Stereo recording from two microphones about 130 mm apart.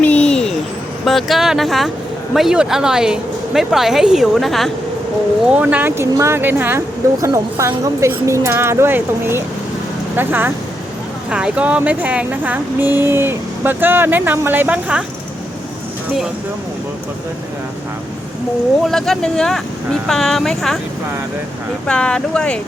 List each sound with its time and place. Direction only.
0.0 s a sound: 10° left (ahead or behind)
1.0 s a woman's voice: centre (ahead or behind)
5.5 s speech: 10° right (ahead or behind)
18.9 s a woman's voice: 5° left (ahead or behind)
21.8 s speech: 10° left (ahead or behind)